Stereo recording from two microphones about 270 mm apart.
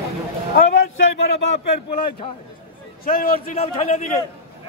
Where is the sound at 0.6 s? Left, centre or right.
Left.